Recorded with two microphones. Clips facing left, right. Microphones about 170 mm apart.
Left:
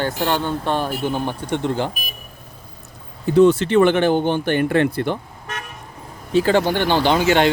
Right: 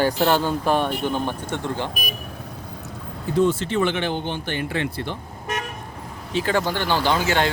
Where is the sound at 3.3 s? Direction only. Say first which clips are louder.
Left 7 dB; 70° left (ahead or behind); by 5.1 s 55° left (ahead or behind).